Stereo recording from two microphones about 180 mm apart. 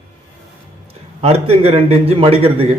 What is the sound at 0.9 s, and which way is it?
A man's voice, 35° right (ahead or behind).